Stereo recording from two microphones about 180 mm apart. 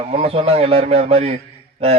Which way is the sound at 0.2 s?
35° right (ahead or behind).